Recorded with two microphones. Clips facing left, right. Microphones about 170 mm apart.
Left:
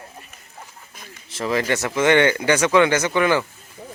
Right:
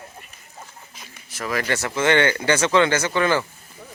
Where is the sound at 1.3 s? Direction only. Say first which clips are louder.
Left 3 dB; 25° left (ahead or behind).